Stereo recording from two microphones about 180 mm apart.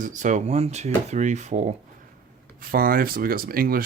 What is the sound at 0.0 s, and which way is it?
Speech, 45° right (ahead or behind).